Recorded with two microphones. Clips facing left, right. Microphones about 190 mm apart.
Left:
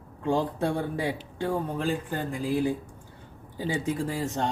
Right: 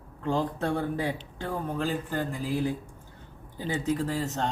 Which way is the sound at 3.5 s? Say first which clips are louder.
Even; 10° left (ahead or behind).